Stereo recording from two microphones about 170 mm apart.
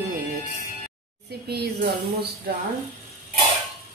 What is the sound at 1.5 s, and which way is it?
Speech, 70° right (ahead or behind).